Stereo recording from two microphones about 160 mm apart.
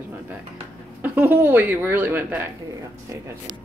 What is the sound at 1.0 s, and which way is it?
Speech, 10° right (ahead or behind).